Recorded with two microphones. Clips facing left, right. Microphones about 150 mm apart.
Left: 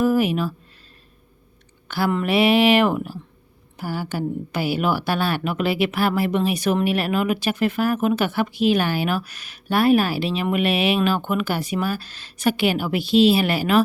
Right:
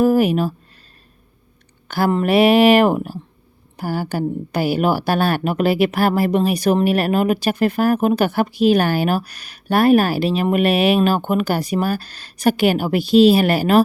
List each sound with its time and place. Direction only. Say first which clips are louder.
0.0 s speech: right 4 dB; 45° right (ahead or behind)
1.9 s a woman's voice: right 4 dB; 40° right (ahead or behind)